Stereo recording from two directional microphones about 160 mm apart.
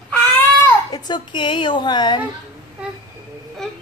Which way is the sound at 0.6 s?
25° left (ahead or behind).